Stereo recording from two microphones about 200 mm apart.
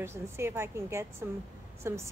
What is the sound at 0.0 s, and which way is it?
A woman's voice, 10° right (ahead or behind).